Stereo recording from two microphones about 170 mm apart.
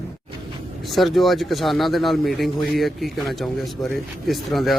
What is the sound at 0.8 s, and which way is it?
Speech, centre (ahead or behind).